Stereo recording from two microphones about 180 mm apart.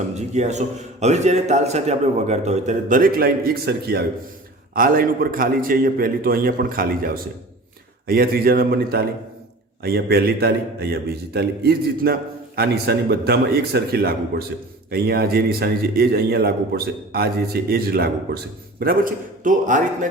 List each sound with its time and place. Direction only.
0.1 s a man's voice: 40° right (ahead or behind)